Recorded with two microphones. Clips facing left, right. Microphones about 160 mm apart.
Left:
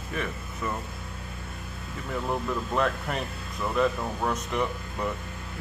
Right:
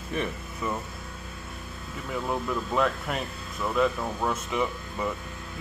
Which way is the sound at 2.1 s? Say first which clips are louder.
Even; centre (ahead or behind).